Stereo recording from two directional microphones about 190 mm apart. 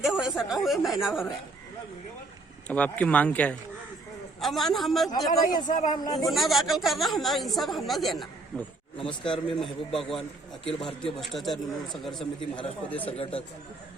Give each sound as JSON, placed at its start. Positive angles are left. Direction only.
{"t": 0.0, "sound": "a sound", "side_deg": -5}
{"t": 0.3, "sound": "speech", "side_deg": 0}
{"t": 2.6, "sound": "speech", "side_deg": 5}
{"t": 5.5, "sound": "speech", "side_deg": 45}
{"t": 6.2, "sound": "speech", "side_deg": 0}
{"t": 10.2, "sound": "a man's voice", "side_deg": 30}
{"t": 11.2, "sound": "speech", "side_deg": 0}